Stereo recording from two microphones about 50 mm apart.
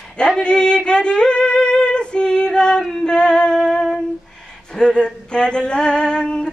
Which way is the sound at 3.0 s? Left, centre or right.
Centre.